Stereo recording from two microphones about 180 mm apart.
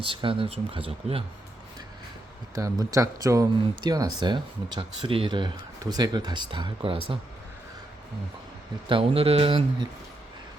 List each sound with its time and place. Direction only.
0.0 s speech: 30° right (ahead or behind)
2.6 s speech: 20° right (ahead or behind)
8.9 s speech: 30° right (ahead or behind)